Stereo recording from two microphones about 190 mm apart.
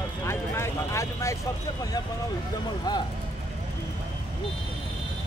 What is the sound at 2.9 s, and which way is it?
Vehicle, 20° left (ahead or behind).